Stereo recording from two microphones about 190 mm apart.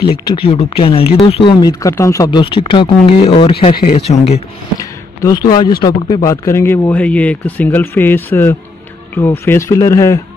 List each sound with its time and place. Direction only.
0.0 s speech: 25° left (ahead or behind)
4.7 s a sound: 20° left (ahead or behind)
5.9 s speech: 20° left (ahead or behind)